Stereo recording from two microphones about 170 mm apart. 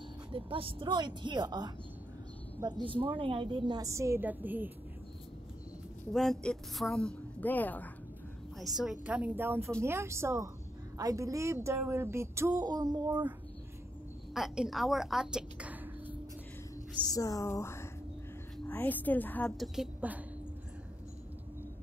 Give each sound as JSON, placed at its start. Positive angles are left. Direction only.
{"t": 0.3, "sound": "a woman's voice", "side_deg": -30}
{"t": 6.1, "sound": "a woman's voice", "side_deg": 5}
{"t": 8.5, "sound": "a woman's voice", "side_deg": 0}
{"t": 14.3, "sound": "a woman's voice", "side_deg": -5}
{"t": 17.1, "sound": "a woman's voice", "side_deg": 20}